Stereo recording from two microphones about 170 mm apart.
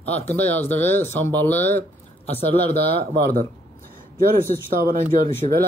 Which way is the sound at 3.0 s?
55° right (ahead or behind).